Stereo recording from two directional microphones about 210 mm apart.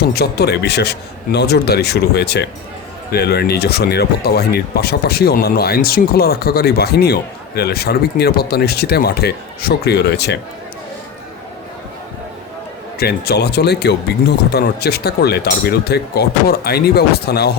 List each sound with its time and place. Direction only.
0.1 s speech: 50° left (ahead or behind)
13.0 s speech: 50° left (ahead or behind)